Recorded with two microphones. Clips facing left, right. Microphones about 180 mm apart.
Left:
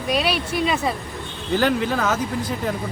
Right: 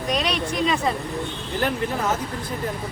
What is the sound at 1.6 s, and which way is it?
Speech, 90° left.